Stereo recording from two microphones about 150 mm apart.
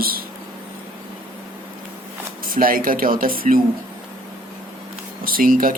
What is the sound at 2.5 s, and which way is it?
Speech, 70° right (ahead or behind).